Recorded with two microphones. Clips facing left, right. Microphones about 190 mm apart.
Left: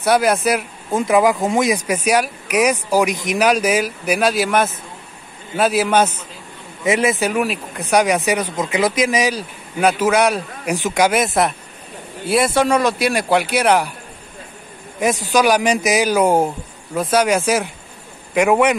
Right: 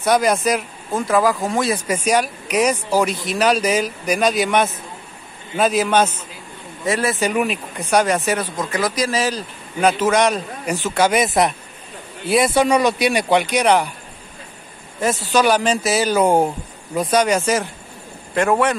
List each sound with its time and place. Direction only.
0.0 s speech: 5° left (ahead or behind)
0.9 s a man's voice: 20° left (ahead or behind)
7.2 s speech: 5° left (ahead or behind)
11.1 s speech: centre (ahead or behind)
15.0 s speech: 15° left (ahead or behind)